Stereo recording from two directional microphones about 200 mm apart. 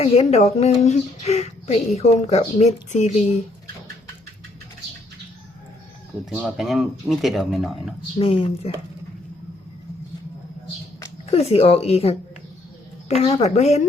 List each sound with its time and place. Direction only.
0.0 s speech: 30° left (ahead or behind)
6.3 s speech: 5° right (ahead or behind)
8.2 s speech: 30° left (ahead or behind)
11.3 s speech: 30° left (ahead or behind)